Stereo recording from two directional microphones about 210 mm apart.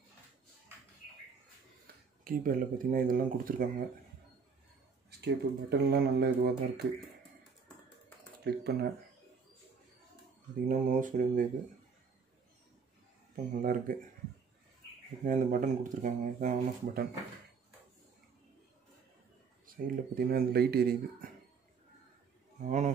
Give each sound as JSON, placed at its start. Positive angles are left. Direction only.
{"t": 2.2, "sound": "speech", "side_deg": -40}
{"t": 5.2, "sound": "speech", "side_deg": -50}
{"t": 8.5, "sound": "speech", "side_deg": -50}
{"t": 10.7, "sound": "speech", "side_deg": -35}
{"t": 13.6, "sound": "speech", "side_deg": -40}
{"t": 15.2, "sound": "speech", "side_deg": -35}
{"t": 19.6, "sound": "speech", "side_deg": -45}
{"t": 22.7, "sound": "speech", "side_deg": -35}